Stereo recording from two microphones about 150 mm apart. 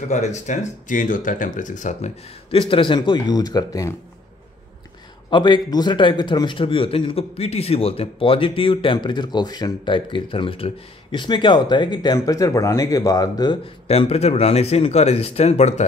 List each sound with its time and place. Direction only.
0.1 s speech: 50° left (ahead or behind); by 3.9 s 25° left (ahead or behind)
5.3 s speech: 30° left (ahead or behind)
13.8 s speech: 45° left (ahead or behind)